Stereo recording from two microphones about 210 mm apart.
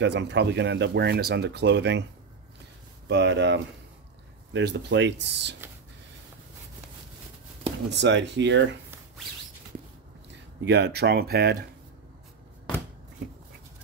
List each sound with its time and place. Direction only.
0.0 s speech: 55° right (ahead or behind)
3.1 s speech: 55° right (ahead or behind)
7.9 s speech: 55° right (ahead or behind)
10.6 s speech: 55° right (ahead or behind)